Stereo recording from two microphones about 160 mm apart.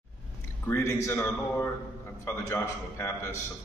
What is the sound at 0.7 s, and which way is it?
A man's voice, 15° left (ahead or behind).